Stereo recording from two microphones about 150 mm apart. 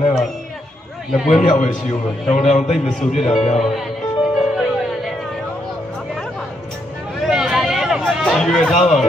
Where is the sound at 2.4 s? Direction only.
50° left (ahead or behind).